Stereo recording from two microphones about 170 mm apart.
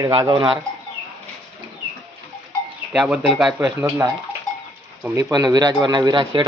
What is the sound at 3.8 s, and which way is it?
Speech, 15° right (ahead or behind).